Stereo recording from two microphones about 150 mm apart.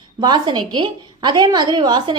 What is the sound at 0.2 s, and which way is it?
A woman's voice, 30° right (ahead or behind).